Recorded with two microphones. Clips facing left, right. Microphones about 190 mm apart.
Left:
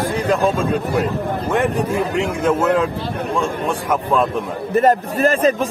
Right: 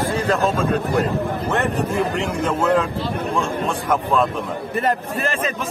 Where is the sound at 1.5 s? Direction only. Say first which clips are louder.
Left 4 dB; 10° left (ahead or behind).